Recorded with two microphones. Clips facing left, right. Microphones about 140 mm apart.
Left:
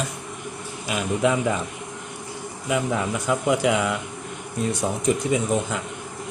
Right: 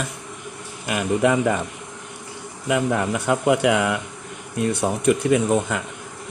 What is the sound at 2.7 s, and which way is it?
A man's voice, 70° right (ahead or behind).